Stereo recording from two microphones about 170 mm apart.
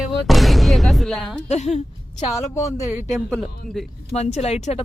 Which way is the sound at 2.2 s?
20° left (ahead or behind).